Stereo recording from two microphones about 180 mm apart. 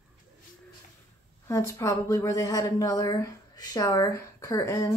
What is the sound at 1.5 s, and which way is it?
Speech, 15° left (ahead or behind).